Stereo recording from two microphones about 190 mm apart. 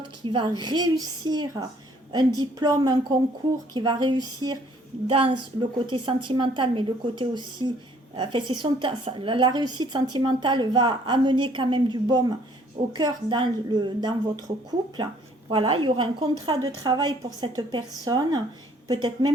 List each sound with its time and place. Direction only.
0.3 s a woman's voice: 25° right (ahead or behind)